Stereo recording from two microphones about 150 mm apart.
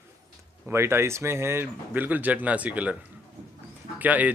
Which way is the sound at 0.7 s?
15° right (ahead or behind).